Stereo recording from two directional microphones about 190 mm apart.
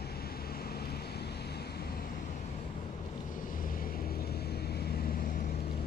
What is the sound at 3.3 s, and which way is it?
Vehicle, 45° left (ahead or behind).